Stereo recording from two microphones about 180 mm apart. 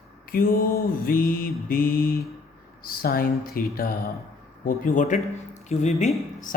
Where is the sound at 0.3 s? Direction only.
55° left (ahead or behind).